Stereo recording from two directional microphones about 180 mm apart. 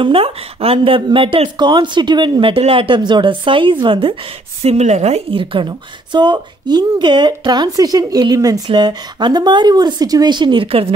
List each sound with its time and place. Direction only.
0.0 s a woman's voice: 30° right (ahead or behind)